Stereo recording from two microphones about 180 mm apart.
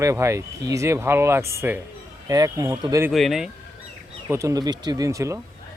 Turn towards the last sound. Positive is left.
turn(degrees=-15)  # may be behind; listen again after turning